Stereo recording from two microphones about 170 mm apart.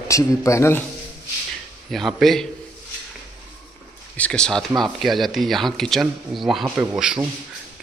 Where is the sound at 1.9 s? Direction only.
Centre (ahead or behind).